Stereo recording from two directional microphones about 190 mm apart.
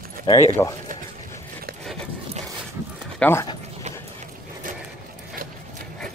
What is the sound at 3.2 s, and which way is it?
Speech, 10° left (ahead or behind).